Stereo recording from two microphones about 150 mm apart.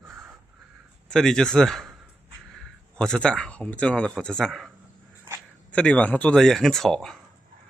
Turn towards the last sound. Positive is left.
turn(degrees=0)  # may be behind; listen again after turning